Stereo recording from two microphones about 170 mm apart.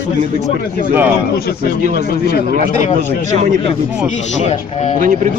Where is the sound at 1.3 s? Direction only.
70° left (ahead or behind).